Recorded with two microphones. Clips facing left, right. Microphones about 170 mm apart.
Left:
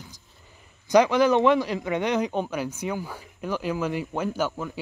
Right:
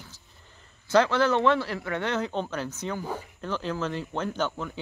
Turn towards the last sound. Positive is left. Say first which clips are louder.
# left 2 dB
turn(degrees=10)  # may be behind; listen again after turning